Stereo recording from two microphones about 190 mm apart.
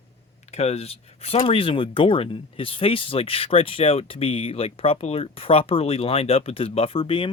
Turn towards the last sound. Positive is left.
turn(degrees=30)  # may be behind; listen again after turning